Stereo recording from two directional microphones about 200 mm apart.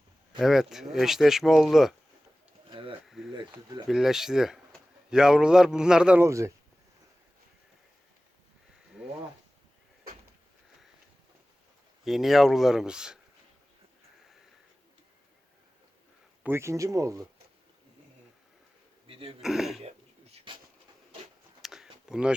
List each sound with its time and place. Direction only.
0.3 s a man's voice: centre (ahead or behind)
2.6 s pigeon: 25° right (ahead or behind)
3.5 s speech: 20° right (ahead or behind)
3.8 s a man's voice: centre (ahead or behind)
12.0 s a man's voice: centre (ahead or behind)
16.4 s speech: 10° right (ahead or behind)
19.0 s a sound: 30° right (ahead or behind)
19.4 s a man's voice: centre (ahead or behind)
20.3 s a sound: 25° right (ahead or behind)
21.6 s a sound: centre (ahead or behind)